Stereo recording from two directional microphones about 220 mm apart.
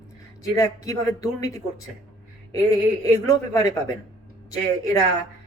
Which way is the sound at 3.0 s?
15° left (ahead or behind).